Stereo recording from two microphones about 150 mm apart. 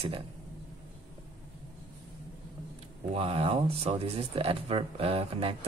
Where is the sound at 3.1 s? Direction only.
40° right (ahead or behind).